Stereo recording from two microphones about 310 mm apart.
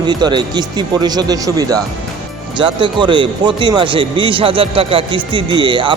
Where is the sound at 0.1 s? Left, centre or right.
Centre.